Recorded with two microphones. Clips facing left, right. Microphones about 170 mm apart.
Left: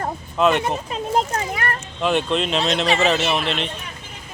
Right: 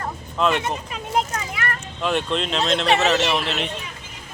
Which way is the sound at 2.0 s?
Centre (ahead or behind).